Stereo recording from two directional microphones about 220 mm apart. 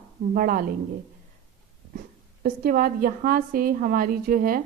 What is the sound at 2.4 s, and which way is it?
A woman's voice, 40° right (ahead or behind).